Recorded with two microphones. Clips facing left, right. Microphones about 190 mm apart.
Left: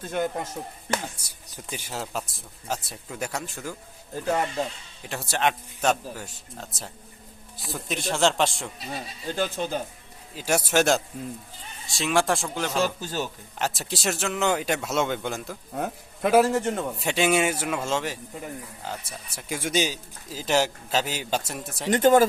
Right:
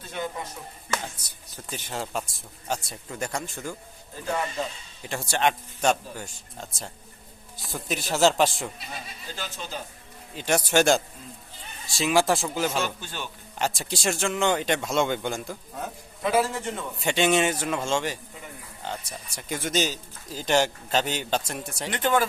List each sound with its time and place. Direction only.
0.0 s a man's voice: 50° left (ahead or behind)
1.2 s speech: 15° left (ahead or behind)
2.0 s speech: centre (ahead or behind)
5.0 s speech: centre (ahead or behind)
9.3 s speech: 55° left (ahead or behind)
10.3 s speech: 5° left (ahead or behind)
12.8 s a man's voice: 40° left (ahead or behind)
13.6 s speech: centre (ahead or behind)
15.8 s a man's voice: 50° left (ahead or behind)
17.0 s a man's voice: 5° left (ahead or behind)
21.8 s a man's voice: 40° left (ahead or behind)